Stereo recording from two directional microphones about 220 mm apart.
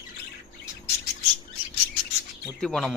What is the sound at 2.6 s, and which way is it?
Speech, 5° left (ahead or behind).